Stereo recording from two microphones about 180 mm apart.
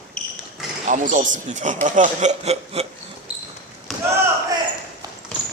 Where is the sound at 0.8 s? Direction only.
45° right (ahead or behind).